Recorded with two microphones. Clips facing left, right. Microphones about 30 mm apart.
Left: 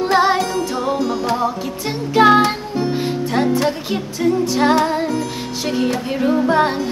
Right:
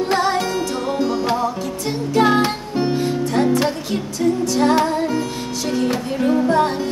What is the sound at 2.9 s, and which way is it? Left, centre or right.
Music, left.